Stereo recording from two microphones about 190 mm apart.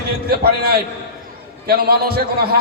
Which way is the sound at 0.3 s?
55° right (ahead or behind).